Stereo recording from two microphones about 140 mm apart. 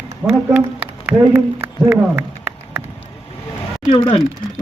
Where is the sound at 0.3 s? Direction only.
10° right (ahead or behind).